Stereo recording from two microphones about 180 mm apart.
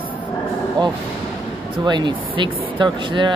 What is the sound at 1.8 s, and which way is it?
Speech, 25° right (ahead or behind).